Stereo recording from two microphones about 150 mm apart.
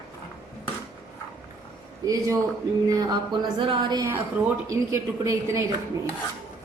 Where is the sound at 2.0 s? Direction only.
20° right (ahead or behind).